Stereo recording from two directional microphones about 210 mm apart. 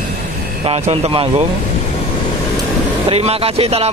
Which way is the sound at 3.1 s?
30° right (ahead or behind).